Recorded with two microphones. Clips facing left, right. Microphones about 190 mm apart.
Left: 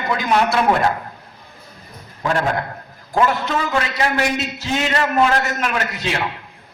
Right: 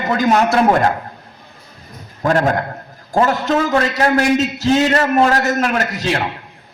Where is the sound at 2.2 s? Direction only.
45° right (ahead or behind).